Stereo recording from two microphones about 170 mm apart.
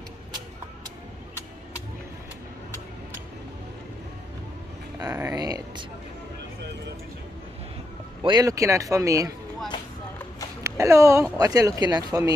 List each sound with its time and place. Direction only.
5.1 s speech: 20° right (ahead or behind)
8.2 s speech: 25° right (ahead or behind)
10.6 s speech: 15° right (ahead or behind)